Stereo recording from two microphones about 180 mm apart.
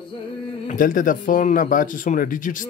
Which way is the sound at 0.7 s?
50° left (ahead or behind).